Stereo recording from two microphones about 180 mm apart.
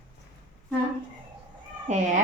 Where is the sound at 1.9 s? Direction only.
40° right (ahead or behind).